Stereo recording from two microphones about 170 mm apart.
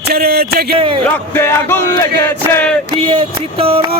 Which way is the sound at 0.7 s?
30° right (ahead or behind).